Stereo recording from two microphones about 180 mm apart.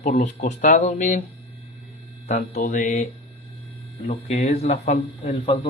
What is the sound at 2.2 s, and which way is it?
Speech, 40° left (ahead or behind).